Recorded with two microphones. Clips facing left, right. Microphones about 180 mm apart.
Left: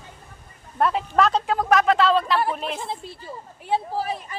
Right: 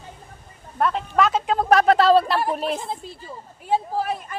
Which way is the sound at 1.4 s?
20° right (ahead or behind).